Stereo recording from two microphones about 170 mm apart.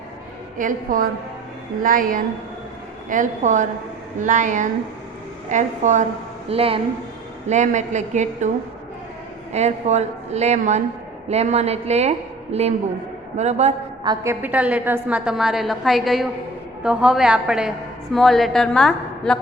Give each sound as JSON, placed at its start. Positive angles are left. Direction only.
{"t": 0.6, "sound": "a woman's voice", "side_deg": -55}
{"t": 6.5, "sound": "a woman's voice", "side_deg": -35}
{"t": 7.4, "sound": "a woman's voice", "side_deg": -45}
{"t": 9.5, "sound": "a woman's voice", "side_deg": -40}
{"t": 14.0, "sound": "a woman's voice", "side_deg": -25}
{"t": 14.4, "sound": "a woman's voice", "side_deg": -10}